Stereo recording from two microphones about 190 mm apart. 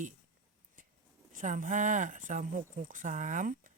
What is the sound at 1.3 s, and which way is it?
Speech, 45° right (ahead or behind).